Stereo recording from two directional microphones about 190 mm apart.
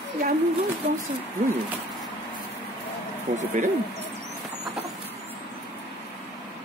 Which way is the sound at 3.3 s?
40° right (ahead or behind).